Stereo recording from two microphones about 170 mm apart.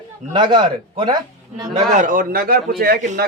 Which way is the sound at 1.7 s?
50° right (ahead or behind).